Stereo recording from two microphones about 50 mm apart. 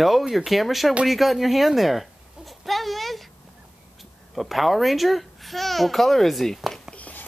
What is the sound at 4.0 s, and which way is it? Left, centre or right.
A child's voice, centre.